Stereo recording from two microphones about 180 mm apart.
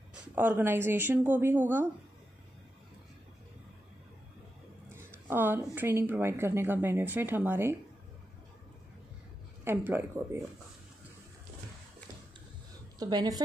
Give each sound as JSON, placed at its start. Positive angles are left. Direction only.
{"t": 0.1, "sound": "speech", "side_deg": -10}
{"t": 4.9, "sound": "a sound", "side_deg": -10}
{"t": 5.8, "sound": "speech", "side_deg": -10}
{"t": 9.7, "sound": "speech", "side_deg": -10}
{"t": 13.0, "sound": "a woman's voice", "side_deg": -20}